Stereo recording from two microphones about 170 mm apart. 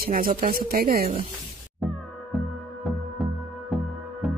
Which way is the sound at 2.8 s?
Centre (ahead or behind).